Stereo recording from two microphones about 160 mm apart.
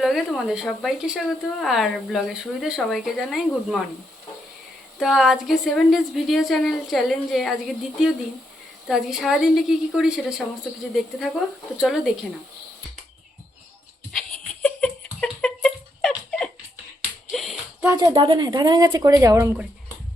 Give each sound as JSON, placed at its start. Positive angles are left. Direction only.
{"t": 0.0, "sound": "speech", "side_deg": 0}
{"t": 4.9, "sound": "speech", "side_deg": 0}
{"t": 8.9, "sound": "speech", "side_deg": -5}
{"t": 14.1, "sound": "a sound", "side_deg": 5}
{"t": 17.3, "sound": "music", "side_deg": 0}
{"t": 17.7, "sound": "speech", "side_deg": -20}